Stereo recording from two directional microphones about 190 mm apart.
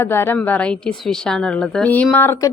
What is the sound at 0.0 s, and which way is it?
A woman's voice, 10° left (ahead or behind).